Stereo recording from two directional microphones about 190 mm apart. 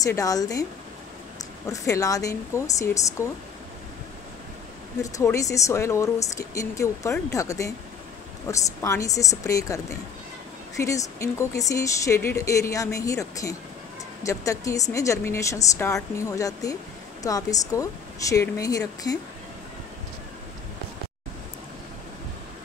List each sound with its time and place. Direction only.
0.0 s speech: 20° left (ahead or behind)
1.7 s speech: 15° left (ahead or behind)
5.0 s speech: 15° left (ahead or behind)